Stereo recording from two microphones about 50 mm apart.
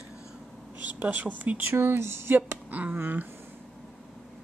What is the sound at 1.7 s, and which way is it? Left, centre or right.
Speech, right.